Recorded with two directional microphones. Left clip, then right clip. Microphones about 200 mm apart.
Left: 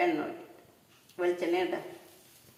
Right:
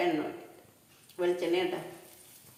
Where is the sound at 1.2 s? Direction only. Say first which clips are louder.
Even; 30° left (ahead or behind).